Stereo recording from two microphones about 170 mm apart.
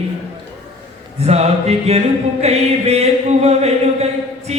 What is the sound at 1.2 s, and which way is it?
Music, 40° right (ahead or behind).